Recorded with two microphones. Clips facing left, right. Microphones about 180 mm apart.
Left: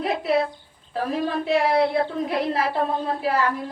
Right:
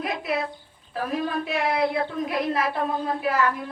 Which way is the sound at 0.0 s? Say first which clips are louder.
Left 5 dB; 30° left (ahead or behind).